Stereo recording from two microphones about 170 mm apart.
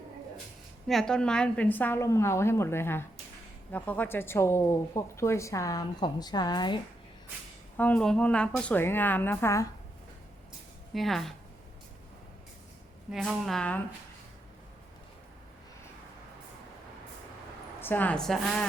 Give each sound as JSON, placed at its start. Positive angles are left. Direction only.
{"t": 0.9, "sound": "a woman's voice", "side_deg": 5}
{"t": 7.8, "sound": "a woman's voice", "side_deg": 10}
{"t": 10.9, "sound": "a woman's voice", "side_deg": 0}
{"t": 13.1, "sound": "a woman's voice", "side_deg": 0}
{"t": 17.7, "sound": "a woman's voice", "side_deg": 10}